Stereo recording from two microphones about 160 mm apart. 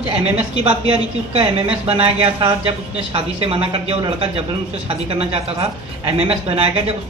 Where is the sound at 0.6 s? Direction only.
35° right (ahead or behind).